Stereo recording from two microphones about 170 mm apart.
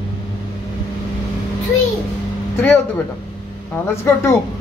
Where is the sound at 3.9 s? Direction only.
15° left (ahead or behind).